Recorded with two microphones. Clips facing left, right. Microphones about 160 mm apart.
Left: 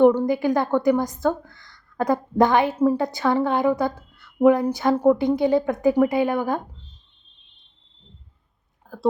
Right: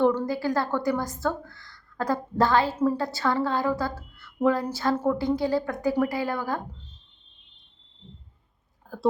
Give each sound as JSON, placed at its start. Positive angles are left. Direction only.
{"t": 0.0, "sound": "a woman's voice", "side_deg": 15}
{"t": 8.9, "sound": "speech", "side_deg": 0}